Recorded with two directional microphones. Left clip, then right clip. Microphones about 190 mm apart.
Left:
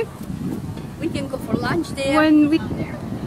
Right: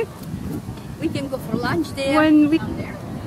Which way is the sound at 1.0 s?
60° right (ahead or behind).